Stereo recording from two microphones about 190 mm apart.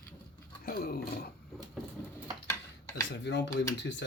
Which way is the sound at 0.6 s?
50° left (ahead or behind).